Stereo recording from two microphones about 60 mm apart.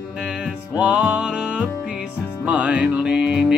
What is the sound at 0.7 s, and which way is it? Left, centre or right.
Music, right.